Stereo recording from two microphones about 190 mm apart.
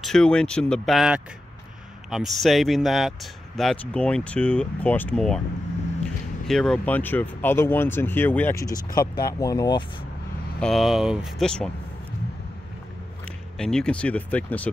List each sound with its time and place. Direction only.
0.0 s speech: 5° left (ahead or behind)
6.4 s speech: 5° left (ahead or behind); by 9.8 s 20° left (ahead or behind)
10.6 s speech: centre (ahead or behind)
13.6 s speech: 5° left (ahead or behind)